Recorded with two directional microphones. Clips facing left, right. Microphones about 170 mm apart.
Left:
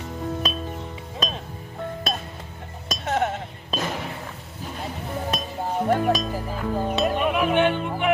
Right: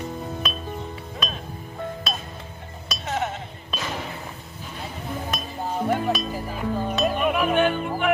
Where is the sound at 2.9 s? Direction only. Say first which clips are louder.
Left 3 dB; 50° left (ahead or behind).